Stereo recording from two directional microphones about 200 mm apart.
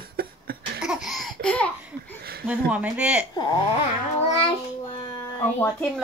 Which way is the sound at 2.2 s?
50° right (ahead or behind).